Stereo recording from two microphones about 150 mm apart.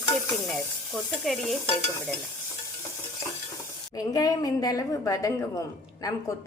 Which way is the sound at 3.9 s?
25° left (ahead or behind).